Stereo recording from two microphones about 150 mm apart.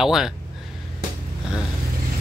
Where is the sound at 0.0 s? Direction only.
5° right (ahead or behind).